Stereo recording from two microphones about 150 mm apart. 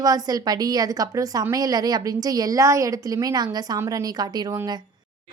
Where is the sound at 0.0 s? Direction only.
25° right (ahead or behind).